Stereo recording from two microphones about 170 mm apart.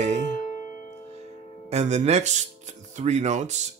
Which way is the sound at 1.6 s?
40° right (ahead or behind).